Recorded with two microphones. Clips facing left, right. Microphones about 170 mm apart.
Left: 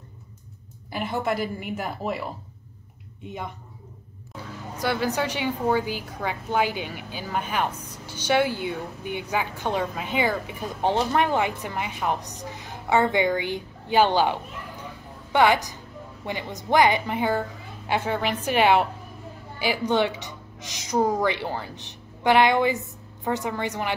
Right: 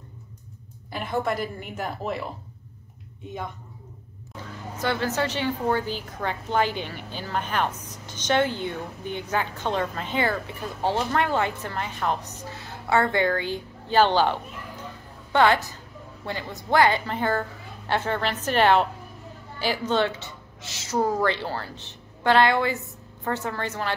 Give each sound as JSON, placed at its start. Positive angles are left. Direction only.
{"t": 0.9, "sound": "a woman's voice", "side_deg": 5}
{"t": 4.7, "sound": "a woman's voice", "side_deg": 10}